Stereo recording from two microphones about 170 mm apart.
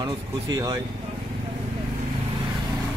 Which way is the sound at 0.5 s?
25° right (ahead or behind).